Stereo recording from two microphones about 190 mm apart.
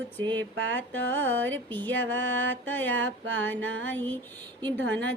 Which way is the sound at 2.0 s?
85° right.